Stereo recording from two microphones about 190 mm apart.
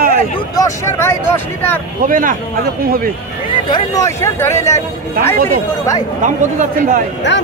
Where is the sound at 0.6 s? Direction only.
15° left (ahead or behind).